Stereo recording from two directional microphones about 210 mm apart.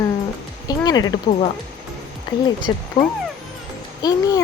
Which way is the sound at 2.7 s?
20° left (ahead or behind).